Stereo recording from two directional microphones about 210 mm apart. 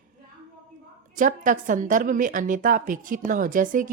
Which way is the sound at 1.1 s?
40° right (ahead or behind).